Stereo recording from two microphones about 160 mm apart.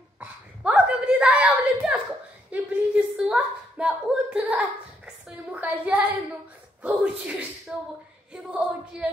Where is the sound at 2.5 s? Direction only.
5° right (ahead or behind).